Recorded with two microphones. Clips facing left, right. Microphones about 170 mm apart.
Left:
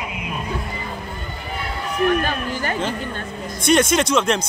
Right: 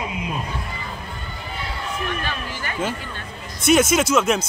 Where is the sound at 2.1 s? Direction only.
45° left (ahead or behind).